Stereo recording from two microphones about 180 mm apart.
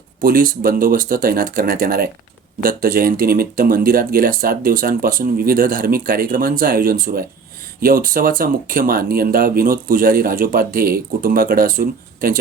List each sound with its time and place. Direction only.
0.2 s speech: 50° right (ahead or behind)